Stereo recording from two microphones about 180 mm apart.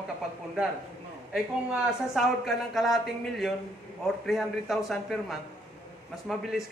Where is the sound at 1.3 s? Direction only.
Centre (ahead or behind).